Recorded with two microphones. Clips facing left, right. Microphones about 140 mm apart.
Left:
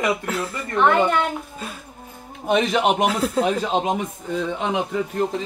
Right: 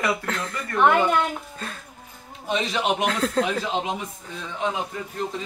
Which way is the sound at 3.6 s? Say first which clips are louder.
Left 5 dB; 50° left (ahead or behind).